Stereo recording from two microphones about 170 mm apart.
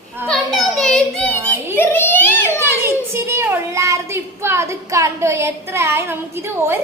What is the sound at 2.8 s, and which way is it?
A child's voice, 15° right (ahead or behind).